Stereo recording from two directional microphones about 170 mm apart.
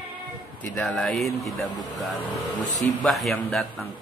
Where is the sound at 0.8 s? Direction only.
5° left (ahead or behind).